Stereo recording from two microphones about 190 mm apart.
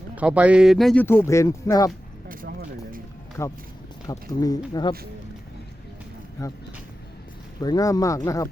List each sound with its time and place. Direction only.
0.2 s speech: 5° right (ahead or behind)
1.0 s speech: 15° left (ahead or behind)
3.4 s speech: 15° left (ahead or behind)
6.4 s speech: 15° left (ahead or behind)
7.6 s speech: 20° left (ahead or behind)